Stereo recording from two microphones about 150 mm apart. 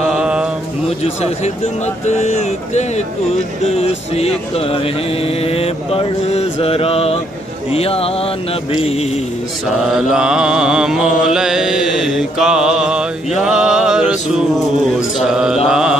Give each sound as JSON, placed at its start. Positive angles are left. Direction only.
{"t": 0.1, "sound": "mantra", "side_deg": -5}
{"t": 0.8, "sound": "speech", "side_deg": 45}
{"t": 4.6, "sound": "mantra", "side_deg": 40}
{"t": 8.8, "sound": "speech", "side_deg": 45}
{"t": 9.9, "sound": "mantra", "side_deg": -5}